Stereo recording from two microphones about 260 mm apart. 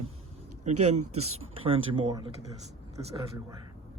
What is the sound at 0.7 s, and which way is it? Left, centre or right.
Speech, right.